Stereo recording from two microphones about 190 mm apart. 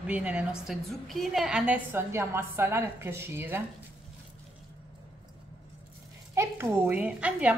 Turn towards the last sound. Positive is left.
turn(degrees=-5)  # may be behind; listen again after turning